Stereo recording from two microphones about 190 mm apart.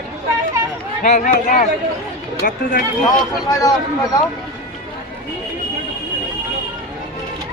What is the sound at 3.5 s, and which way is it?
Speech, 20° left (ahead or behind).